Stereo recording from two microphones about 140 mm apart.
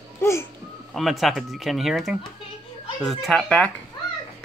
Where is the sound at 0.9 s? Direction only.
Centre (ahead or behind).